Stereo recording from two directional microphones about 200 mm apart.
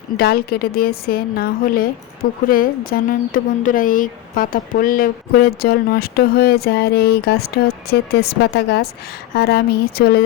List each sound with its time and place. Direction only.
0.2 s speech: 50° left (ahead or behind)